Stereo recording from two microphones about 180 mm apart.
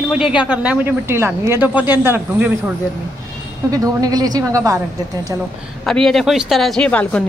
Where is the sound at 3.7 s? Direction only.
20° right (ahead or behind).